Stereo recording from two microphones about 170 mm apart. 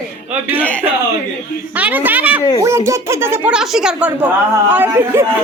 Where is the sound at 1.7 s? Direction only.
10° right (ahead or behind).